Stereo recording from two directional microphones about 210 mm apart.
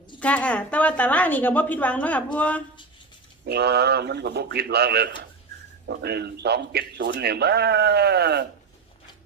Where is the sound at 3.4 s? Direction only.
50° right (ahead or behind).